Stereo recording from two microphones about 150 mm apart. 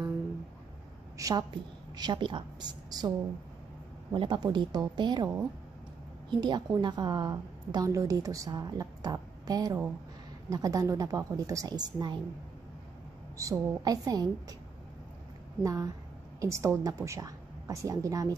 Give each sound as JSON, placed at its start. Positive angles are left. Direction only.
{"t": 1.1, "sound": "a woman's voice", "side_deg": -20}
{"t": 4.1, "sound": "a woman's voice", "side_deg": -30}
{"t": 13.4, "sound": "a woman's voice", "side_deg": -25}
{"t": 15.6, "sound": "a woman's voice", "side_deg": -25}